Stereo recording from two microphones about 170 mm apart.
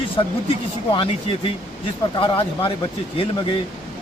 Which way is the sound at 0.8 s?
30° left (ahead or behind).